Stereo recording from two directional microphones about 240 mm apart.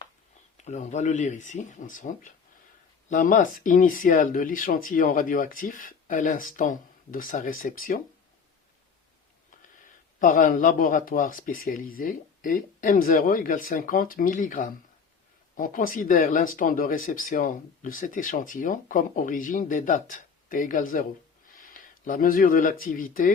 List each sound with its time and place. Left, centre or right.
0.5 s speech: left
10.2 s speech: left